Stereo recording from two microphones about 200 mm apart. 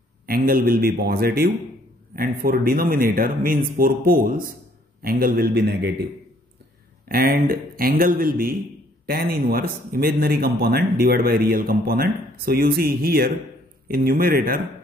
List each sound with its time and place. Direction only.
0.3 s speech: 45° right (ahead or behind)
7.1 s speech: 50° right (ahead or behind)